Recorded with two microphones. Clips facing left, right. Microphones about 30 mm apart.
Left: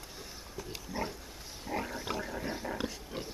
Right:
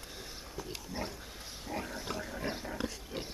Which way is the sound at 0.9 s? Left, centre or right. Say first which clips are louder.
Left 3 dB; centre.